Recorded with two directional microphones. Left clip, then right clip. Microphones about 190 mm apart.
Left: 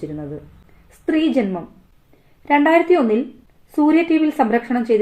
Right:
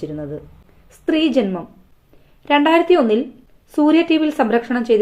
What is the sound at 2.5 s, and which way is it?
A woman's voice, 25° right (ahead or behind).